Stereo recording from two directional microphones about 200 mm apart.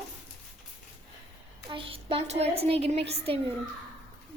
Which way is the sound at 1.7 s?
25° right (ahead or behind).